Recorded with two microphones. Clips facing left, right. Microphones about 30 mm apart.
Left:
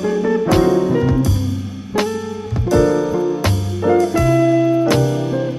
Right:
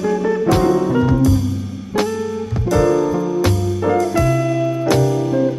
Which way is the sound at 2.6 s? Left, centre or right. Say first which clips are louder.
Left 1 dB; centre.